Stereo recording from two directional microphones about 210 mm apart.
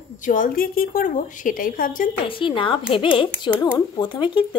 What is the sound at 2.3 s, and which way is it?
Speech, 25° left (ahead or behind).